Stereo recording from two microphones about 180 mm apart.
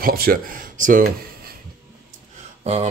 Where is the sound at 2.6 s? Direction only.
35° right (ahead or behind).